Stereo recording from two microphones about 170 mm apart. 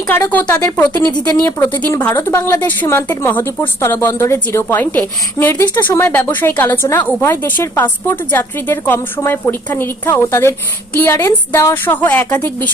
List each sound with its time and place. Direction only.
0.3 s a woman's voice: 10° left (ahead or behind)
0.9 s a woman's voice: 25° left (ahead or behind); by 12.7 s 10° left (ahead or behind)